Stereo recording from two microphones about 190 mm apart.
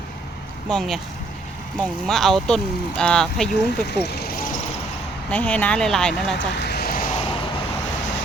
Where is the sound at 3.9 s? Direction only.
60° left (ahead or behind).